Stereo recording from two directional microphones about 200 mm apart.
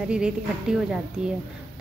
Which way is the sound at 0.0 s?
5° right (ahead or behind).